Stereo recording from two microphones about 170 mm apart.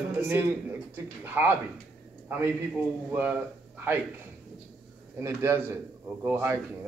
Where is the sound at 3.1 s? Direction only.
10° right (ahead or behind).